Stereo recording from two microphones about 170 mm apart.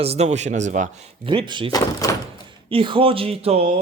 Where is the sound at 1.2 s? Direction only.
30° right (ahead or behind).